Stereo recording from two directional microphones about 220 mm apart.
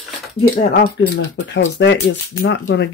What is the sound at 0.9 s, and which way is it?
Speech, 55° left (ahead or behind).